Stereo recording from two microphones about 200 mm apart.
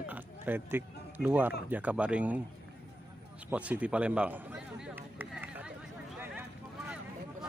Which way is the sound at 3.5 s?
5° right (ahead or behind).